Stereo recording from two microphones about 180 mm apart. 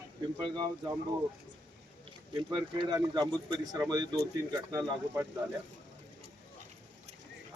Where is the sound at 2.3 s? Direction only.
25° right (ahead or behind).